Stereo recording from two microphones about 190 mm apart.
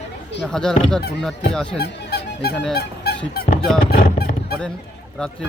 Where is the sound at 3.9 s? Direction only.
45° left (ahead or behind).